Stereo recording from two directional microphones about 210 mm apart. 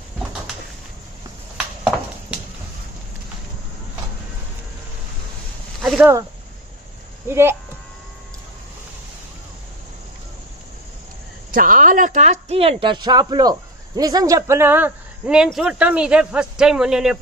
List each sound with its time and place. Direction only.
5.8 s a sound: centre (ahead or behind)
7.2 s a woman's voice: 10° right (ahead or behind)
11.5 s a woman's voice: 40° right (ahead or behind); by 17.2 s 5° right (ahead or behind)